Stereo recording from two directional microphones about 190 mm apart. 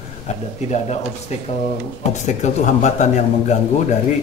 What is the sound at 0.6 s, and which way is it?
Speech, 35° left (ahead or behind).